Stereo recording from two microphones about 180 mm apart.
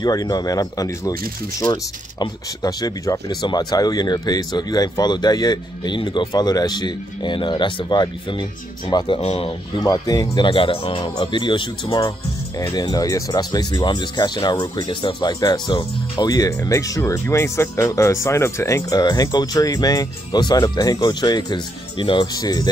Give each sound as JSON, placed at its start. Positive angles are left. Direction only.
{"t": 0.0, "sound": "speech", "side_deg": 20}